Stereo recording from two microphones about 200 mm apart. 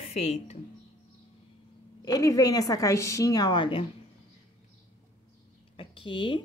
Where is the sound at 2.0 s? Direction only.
15° left (ahead or behind).